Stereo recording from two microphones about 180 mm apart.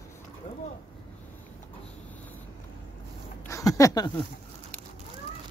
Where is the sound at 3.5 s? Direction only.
20° left (ahead or behind).